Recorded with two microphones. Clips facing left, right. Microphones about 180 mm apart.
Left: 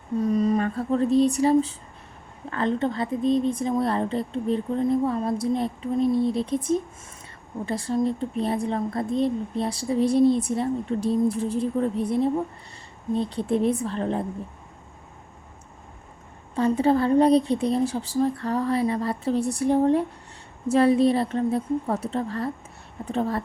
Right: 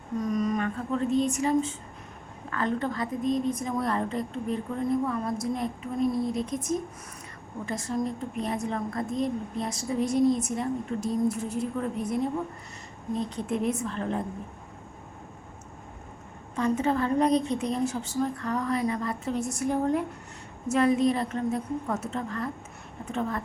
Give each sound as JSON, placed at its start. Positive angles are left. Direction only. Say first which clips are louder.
{"t": 0.2, "sound": "a woman's voice", "louder": "left 5 dB", "side_deg": 30}
{"t": 16.6, "sound": "speech", "louder": "left 5 dB", "side_deg": 30}